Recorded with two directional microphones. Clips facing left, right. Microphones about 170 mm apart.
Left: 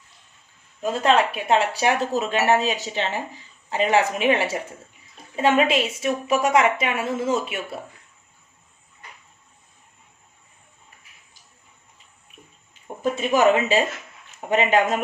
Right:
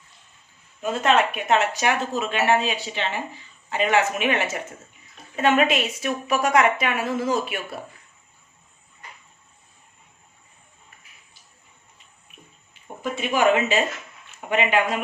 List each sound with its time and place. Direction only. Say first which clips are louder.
0.8 s a woman's voice: left 1 dB; 35° left (ahead or behind)
13.0 s a man's voice: left 3 dB; 40° left (ahead or behind)